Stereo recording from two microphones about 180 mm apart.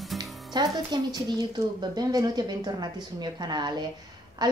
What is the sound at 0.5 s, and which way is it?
Speech, 25° right (ahead or behind).